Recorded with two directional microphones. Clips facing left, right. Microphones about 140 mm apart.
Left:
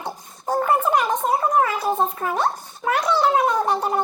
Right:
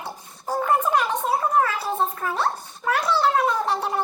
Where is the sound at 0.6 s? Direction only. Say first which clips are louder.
Left 1 dB; 10° left (ahead or behind).